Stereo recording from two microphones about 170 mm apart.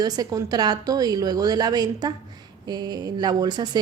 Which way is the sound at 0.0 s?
20° right (ahead or behind).